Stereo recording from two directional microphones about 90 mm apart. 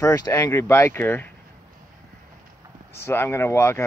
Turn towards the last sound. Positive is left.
turn(degrees=30)  # may be behind; listen again after turning